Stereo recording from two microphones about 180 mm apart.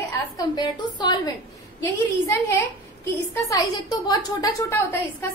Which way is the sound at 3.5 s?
20° left (ahead or behind).